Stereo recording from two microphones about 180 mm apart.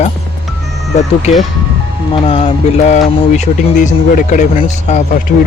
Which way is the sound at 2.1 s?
30° left (ahead or behind).